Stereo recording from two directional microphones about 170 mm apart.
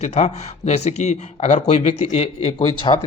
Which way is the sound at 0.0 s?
40° left (ahead or behind).